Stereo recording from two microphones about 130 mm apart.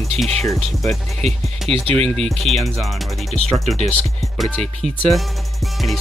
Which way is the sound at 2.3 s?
Centre (ahead or behind).